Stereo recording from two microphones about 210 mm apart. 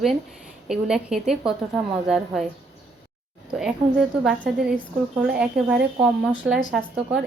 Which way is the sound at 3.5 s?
Centre (ahead or behind).